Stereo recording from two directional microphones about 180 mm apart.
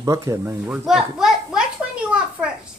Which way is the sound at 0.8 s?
Centre (ahead or behind).